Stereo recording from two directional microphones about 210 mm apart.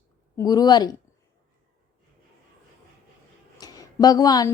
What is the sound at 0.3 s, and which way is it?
Speech, 20° left (ahead or behind).